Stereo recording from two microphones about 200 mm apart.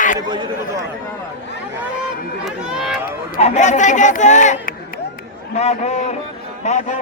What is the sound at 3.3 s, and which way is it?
Speech, 35° left (ahead or behind).